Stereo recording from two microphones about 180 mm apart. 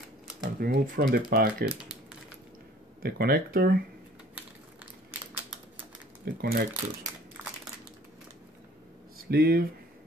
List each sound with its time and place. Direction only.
0.4 s speech: 55° right (ahead or behind)
3.0 s speech: 60° right (ahead or behind)
6.2 s speech: 55° right (ahead or behind)
9.3 s speech: 60° right (ahead or behind)